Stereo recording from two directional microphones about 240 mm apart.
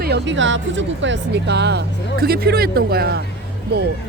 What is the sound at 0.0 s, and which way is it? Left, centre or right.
Speech, right.